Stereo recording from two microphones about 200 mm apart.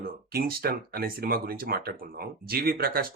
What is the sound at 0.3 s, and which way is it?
Speech, 50° right (ahead or behind).